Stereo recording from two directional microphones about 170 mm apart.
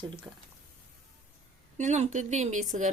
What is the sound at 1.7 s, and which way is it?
A woman's voice, 45° right (ahead or behind).